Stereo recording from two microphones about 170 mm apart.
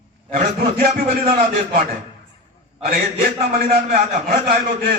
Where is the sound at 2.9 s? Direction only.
60° right (ahead or behind).